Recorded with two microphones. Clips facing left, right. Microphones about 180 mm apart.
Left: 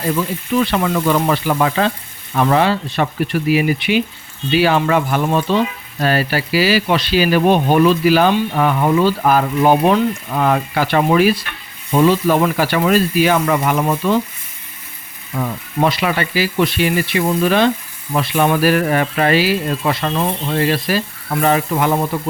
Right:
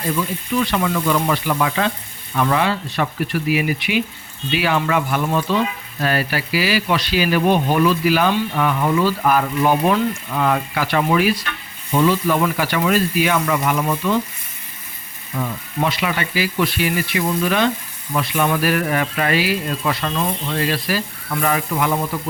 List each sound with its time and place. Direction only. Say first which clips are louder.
0.7 s speech: left 3 dB; 40° left (ahead or behind)
15.4 s speech: left 4 dB; 40° left (ahead or behind)